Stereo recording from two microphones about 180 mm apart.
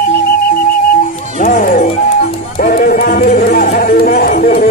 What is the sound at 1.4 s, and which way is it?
Music, 50° left (ahead or behind).